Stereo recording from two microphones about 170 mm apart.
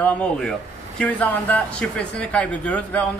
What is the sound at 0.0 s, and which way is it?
Speech, 5° left (ahead or behind).